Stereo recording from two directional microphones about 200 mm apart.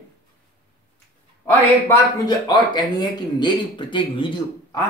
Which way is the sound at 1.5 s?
15° left (ahead or behind).